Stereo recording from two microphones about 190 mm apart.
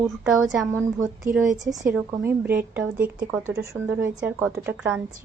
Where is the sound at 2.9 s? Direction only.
45° right (ahead or behind).